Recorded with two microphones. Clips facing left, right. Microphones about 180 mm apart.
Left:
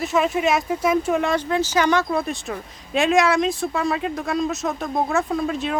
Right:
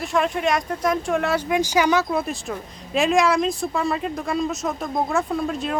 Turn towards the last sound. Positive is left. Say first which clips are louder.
# left 1 dB
turn(degrees=0)  # may be behind; listen again after turning